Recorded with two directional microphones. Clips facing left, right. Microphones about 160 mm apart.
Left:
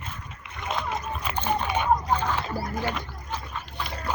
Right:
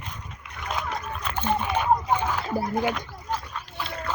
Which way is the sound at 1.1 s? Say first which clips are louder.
Even; 10° left (ahead or behind).